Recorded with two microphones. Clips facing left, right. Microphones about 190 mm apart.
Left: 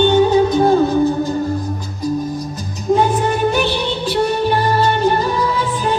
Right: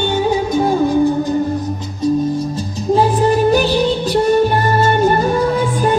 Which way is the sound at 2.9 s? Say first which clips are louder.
Right 2 dB; 35° right (ahead or behind).